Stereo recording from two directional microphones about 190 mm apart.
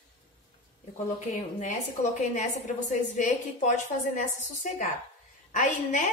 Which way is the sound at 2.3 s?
40° left (ahead or behind).